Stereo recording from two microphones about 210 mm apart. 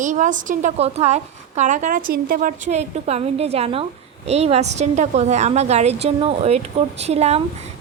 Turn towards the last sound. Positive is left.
turn(degrees=-30)  # may be behind; listen again after turning